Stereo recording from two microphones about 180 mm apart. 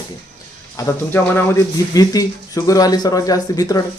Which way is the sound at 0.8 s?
15° left (ahead or behind).